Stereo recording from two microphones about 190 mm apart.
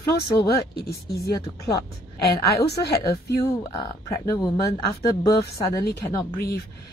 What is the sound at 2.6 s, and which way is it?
Speech, 60° left (ahead or behind).